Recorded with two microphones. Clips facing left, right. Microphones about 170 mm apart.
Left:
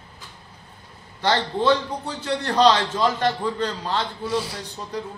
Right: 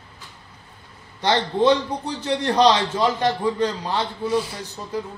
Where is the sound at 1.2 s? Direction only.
15° right (ahead or behind).